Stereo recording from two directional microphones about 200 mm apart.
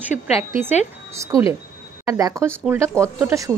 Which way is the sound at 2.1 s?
15° right (ahead or behind).